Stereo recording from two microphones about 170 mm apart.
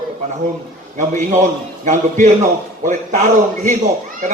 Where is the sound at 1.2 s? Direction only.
45° right (ahead or behind).